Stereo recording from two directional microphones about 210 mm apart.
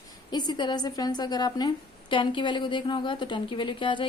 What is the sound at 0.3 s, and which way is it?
Speech, 20° left (ahead or behind).